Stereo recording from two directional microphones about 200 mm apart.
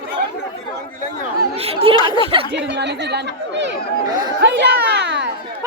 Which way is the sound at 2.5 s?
60° right (ahead or behind).